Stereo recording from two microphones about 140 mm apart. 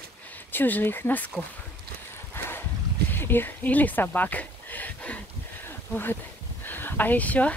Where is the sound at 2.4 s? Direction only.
15° left (ahead or behind).